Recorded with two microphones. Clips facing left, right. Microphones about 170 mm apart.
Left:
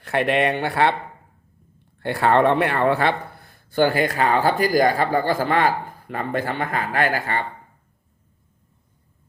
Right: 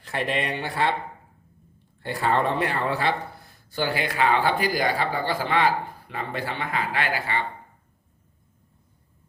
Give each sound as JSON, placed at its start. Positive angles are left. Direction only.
{"t": 0.0, "sound": "speech", "side_deg": 65}
{"t": 2.0, "sound": "speech", "side_deg": 65}